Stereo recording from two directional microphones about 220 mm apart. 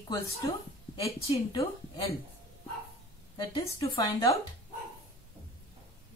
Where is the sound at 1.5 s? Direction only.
25° left (ahead or behind).